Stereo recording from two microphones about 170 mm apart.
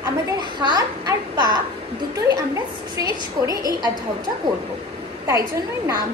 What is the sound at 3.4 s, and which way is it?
Speech, 20° right (ahead or behind).